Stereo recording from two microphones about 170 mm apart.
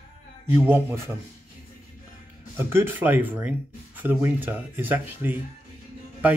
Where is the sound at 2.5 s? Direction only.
15° right (ahead or behind).